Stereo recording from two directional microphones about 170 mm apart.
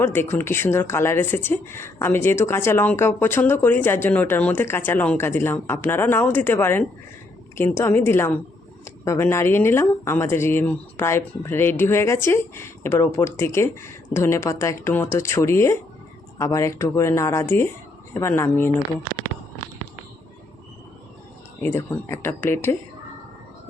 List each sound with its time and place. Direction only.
0.0 s speech: 15° left (ahead or behind)
21.6 s speech: 15° left (ahead or behind)